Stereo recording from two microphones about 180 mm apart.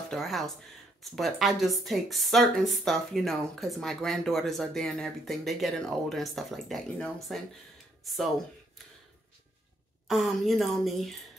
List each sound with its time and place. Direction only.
0.1 s a sound: centre (ahead or behind)
1.1 s speech: centre (ahead or behind)
10.0 s speech: centre (ahead or behind)